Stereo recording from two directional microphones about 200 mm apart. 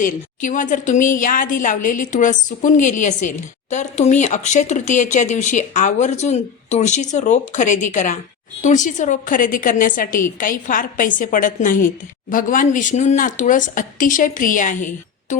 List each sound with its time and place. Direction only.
0.0 s a woman's voice: 40° left (ahead or behind)